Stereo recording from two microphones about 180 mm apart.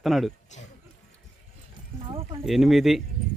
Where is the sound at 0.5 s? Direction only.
40° left (ahead or behind).